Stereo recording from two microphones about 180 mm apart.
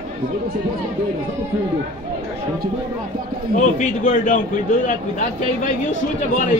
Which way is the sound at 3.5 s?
45° left (ahead or behind).